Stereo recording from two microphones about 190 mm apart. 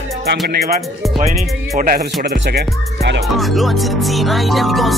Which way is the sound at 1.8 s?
50° right (ahead or behind).